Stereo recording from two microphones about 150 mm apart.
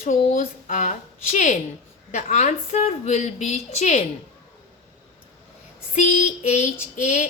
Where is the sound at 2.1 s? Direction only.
55° left (ahead or behind).